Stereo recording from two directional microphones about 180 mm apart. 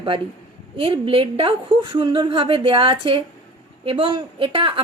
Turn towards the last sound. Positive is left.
turn(degrees=-30)  # may be behind; listen again after turning